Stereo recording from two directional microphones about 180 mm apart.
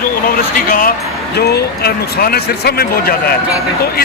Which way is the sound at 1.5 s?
60° left (ahead or behind).